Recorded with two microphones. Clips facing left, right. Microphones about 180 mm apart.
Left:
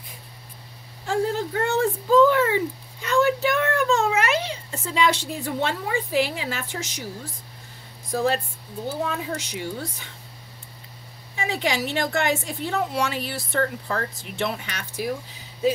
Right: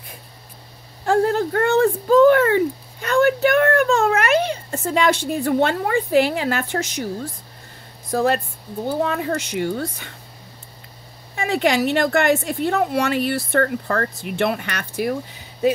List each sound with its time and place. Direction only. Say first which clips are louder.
1.0 s a sound: right 6 dB; 60° right (ahead or behind)
8.1 s a woman's voice: right 4 dB; 60° right (ahead or behind)
11.3 s a woman's voice: right 7 dB; 60° right (ahead or behind)